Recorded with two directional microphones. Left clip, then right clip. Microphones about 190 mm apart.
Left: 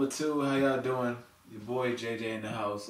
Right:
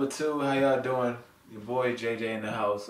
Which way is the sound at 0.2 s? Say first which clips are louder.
Right 4 dB; 10° left (ahead or behind).